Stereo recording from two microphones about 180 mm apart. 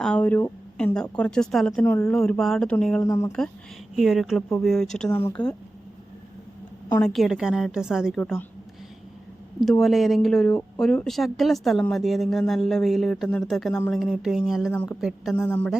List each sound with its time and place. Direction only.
0.0 s speech: 5° left (ahead or behind)
3.0 s speech: 15° left (ahead or behind)
3.9 s speech: centre (ahead or behind)
6.9 s speech: centre (ahead or behind)
8.2 s speech: 10° left (ahead or behind)
9.6 s speech: centre (ahead or behind)
15.4 s speech: 10° left (ahead or behind)